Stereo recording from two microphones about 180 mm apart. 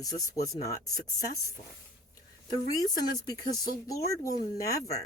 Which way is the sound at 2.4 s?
20° left (ahead or behind).